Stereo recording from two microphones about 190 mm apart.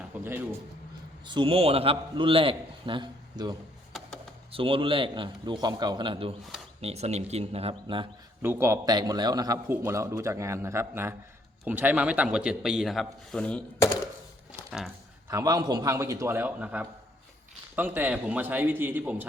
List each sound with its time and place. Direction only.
0.2 s a man's voice: 10° right (ahead or behind)
1.2 s a man's voice: 25° right (ahead or behind)
4.5 s a man's voice: 30° right (ahead or behind)
8.4 s a man's voice: 10° right (ahead or behind); by 14.0 s 10° left (ahead or behind)
15.3 s a man's voice: 15° right (ahead or behind)